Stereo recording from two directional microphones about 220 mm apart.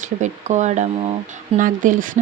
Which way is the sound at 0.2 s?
30° right (ahead or behind).